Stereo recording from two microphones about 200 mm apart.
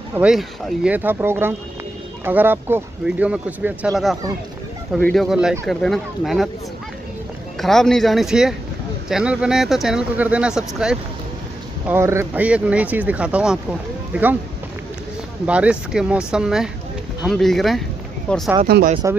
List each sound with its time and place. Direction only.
0.1 s speech: 5° right (ahead or behind)
7.6 s speech: centre (ahead or behind)
15.4 s speech: 5° right (ahead or behind)
18.7 s speech: 50° right (ahead or behind)